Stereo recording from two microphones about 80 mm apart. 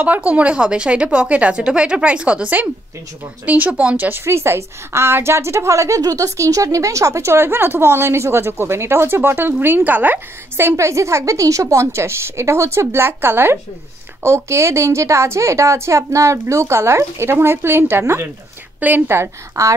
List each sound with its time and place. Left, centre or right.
0.0 s a woman's voice: right
10.8 s a woman's voice: right